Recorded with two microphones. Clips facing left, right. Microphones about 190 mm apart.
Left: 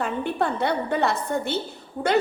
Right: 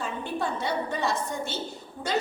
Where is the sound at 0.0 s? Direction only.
60° left (ahead or behind).